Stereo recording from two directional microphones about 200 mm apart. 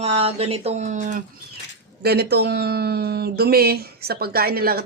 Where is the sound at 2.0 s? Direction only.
55° right (ahead or behind).